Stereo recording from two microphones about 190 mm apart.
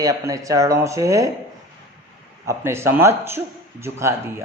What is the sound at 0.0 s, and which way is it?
Speech, 20° right (ahead or behind).